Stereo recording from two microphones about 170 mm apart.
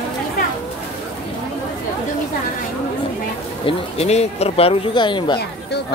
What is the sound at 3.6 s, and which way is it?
Speech, 35° left (ahead or behind).